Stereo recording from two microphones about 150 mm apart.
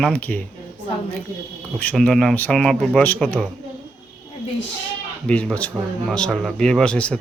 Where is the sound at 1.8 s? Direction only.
5° left (ahead or behind).